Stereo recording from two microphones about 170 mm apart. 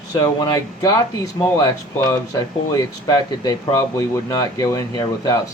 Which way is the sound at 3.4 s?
20° left (ahead or behind).